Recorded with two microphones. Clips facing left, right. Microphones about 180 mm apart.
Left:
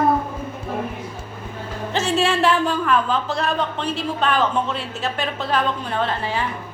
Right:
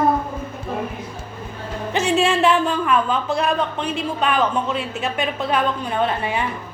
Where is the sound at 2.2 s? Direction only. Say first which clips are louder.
Right 1 dB; centre (ahead or behind).